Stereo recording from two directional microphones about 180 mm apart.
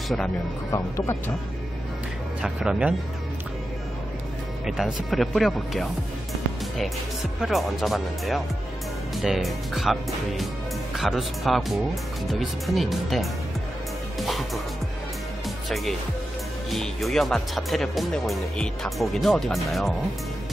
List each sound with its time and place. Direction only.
0.7 s speech: 15° left (ahead or behind)
2.4 s speech: 5° right (ahead or behind)
4.6 s speech: centre (ahead or behind)
7.3 s speech: centre (ahead or behind)
14.2 s music: centre (ahead or behind)
15.7 s speech: centre (ahead or behind)